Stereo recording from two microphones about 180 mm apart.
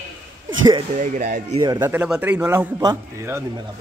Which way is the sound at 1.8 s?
10° right (ahead or behind).